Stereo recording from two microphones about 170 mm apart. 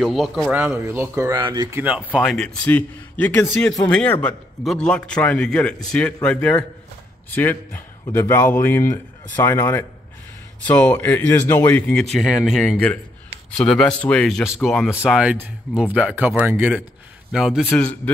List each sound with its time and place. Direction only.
0.0 s a man's voice: centre (ahead or behind)
0.6 s speech: 15° right (ahead or behind)
1.3 s speech: 25° right (ahead or behind)
1.8 s a man's voice: 10° right (ahead or behind)
17.6 s a man's voice: 10° left (ahead or behind)